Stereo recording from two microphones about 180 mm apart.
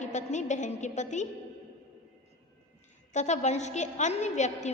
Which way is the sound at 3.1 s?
40° left (ahead or behind).